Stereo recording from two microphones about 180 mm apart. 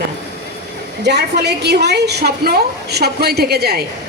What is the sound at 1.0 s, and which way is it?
A woman's voice, 65° right (ahead or behind).